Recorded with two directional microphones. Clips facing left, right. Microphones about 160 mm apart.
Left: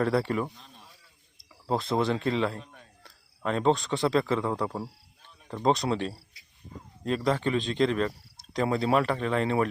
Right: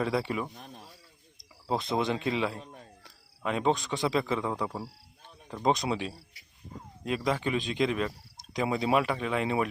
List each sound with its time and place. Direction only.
0.0 s speech: 10° right (ahead or behind)
0.5 s speech: 55° right (ahead or behind)
1.8 s speech: 15° right (ahead or behind)